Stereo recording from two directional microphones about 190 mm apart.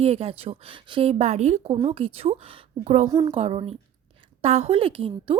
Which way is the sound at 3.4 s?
35° right (ahead or behind).